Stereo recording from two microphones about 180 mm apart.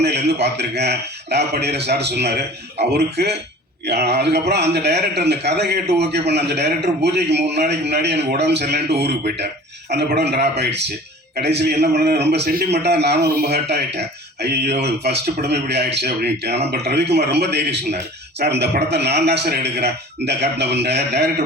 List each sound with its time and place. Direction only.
0.0 s a man's voice: 70° right (ahead or behind)